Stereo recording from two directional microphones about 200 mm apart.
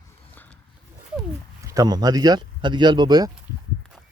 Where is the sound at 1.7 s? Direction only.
20° right (ahead or behind).